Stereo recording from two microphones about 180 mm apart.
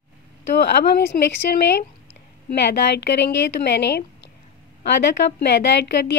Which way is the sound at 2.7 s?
70° left (ahead or behind).